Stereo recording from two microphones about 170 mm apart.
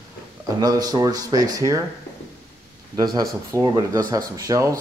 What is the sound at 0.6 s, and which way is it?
Speech, 20° right (ahead or behind).